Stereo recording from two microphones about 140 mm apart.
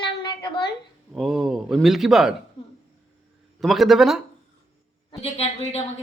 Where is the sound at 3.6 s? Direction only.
Centre (ahead or behind).